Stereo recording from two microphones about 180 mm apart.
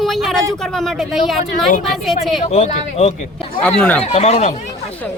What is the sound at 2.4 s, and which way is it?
Speech, 40° left (ahead or behind).